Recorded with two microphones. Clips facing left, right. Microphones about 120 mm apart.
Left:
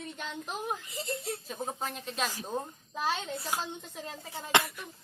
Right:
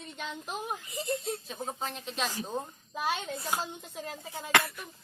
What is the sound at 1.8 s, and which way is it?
A woman's voice, 5° left (ahead or behind).